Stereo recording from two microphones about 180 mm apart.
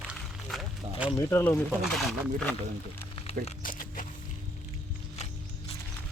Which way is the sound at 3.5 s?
50° left (ahead or behind).